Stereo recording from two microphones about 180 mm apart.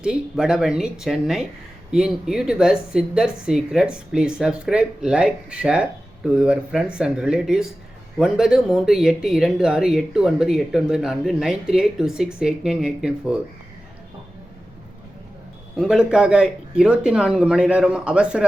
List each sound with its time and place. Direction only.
0.0 s speech: 5° right (ahead or behind)
15.7 s speech: 5° right (ahead or behind)